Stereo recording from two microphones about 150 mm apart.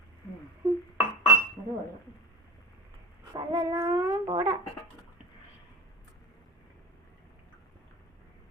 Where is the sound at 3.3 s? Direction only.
20° right (ahead or behind).